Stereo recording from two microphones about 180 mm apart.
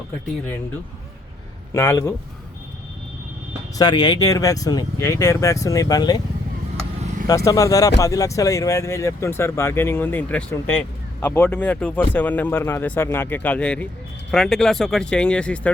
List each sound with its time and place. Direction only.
1.7 s speech: 15° left (ahead or behind)
3.8 s speech: 25° left (ahead or behind)
7.3 s speech: 20° left (ahead or behind)